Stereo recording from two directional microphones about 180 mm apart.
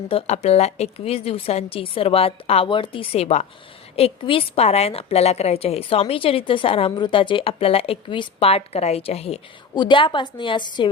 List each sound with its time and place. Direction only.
0.1 s a woman's voice: 35° left (ahead or behind)